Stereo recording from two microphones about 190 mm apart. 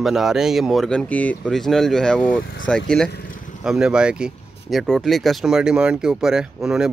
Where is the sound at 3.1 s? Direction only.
50° left (ahead or behind).